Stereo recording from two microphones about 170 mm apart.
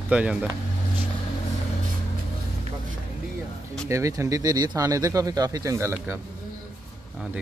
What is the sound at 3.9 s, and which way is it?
Speech, 15° right (ahead or behind).